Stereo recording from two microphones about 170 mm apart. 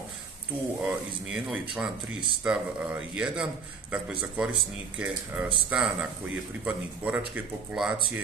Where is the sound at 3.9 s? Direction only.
5° right (ahead or behind).